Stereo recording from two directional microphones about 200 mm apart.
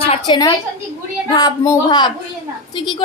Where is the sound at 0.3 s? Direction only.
20° left (ahead or behind).